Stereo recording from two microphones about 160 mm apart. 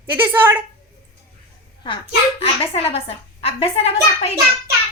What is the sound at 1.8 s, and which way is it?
A child's voice, 35° left (ahead or behind).